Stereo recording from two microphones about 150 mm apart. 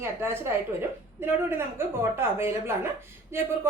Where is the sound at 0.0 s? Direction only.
15° right (ahead or behind).